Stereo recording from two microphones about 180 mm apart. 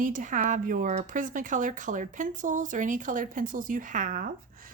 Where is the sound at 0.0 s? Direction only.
45° right (ahead or behind).